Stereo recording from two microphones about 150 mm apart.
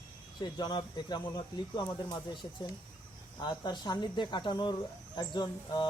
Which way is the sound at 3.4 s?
30° left (ahead or behind).